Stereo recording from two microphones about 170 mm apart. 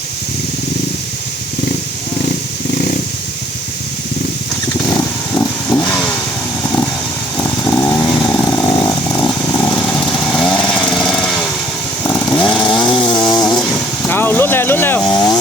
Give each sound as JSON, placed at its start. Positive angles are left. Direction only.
{"t": 5.4, "sound": "vehicle", "side_deg": 5}
{"t": 7.7, "sound": "chainsaw", "side_deg": 25}
{"t": 9.0, "sound": "chainsaw", "side_deg": 10}
{"t": 10.8, "sound": "dog", "side_deg": 5}
{"t": 12.0, "sound": "chainsaw", "side_deg": 5}
{"t": 12.6, "sound": "chainsaw", "side_deg": 25}
{"t": 14.1, "sound": "vehicle", "side_deg": 10}